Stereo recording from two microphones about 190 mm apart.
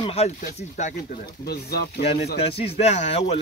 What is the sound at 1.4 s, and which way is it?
Speech, 55° left (ahead or behind).